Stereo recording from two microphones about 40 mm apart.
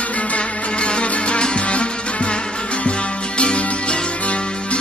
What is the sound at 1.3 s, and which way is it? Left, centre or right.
Music, left.